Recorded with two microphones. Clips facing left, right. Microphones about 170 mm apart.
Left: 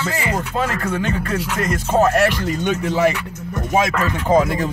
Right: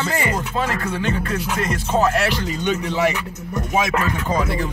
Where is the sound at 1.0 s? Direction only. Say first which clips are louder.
Left 1 dB; 45° left (ahead or behind).